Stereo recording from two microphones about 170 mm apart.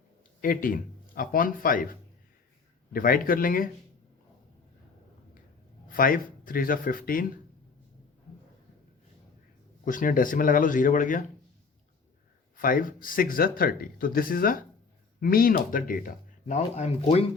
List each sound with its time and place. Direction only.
0.4 s speech: 55° left (ahead or behind)
5.9 s speech: 55° left (ahead or behind)
9.8 s speech: 50° left (ahead or behind)
12.5 s speech: 55° left (ahead or behind)
16.6 s speech: 40° left (ahead or behind)